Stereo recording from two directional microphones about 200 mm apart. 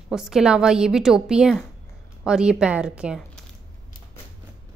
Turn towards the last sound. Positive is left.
turn(degrees=-5)  # may be behind; listen again after turning